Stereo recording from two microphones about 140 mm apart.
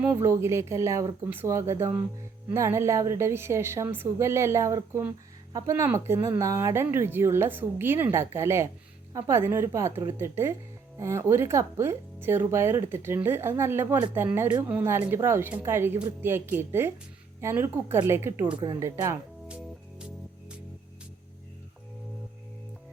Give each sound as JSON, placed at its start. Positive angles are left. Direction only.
{"t": 0.0, "sound": "speech", "side_deg": -20}
{"t": 18.5, "sound": "speech", "side_deg": -30}
{"t": 19.5, "sound": "music", "side_deg": -10}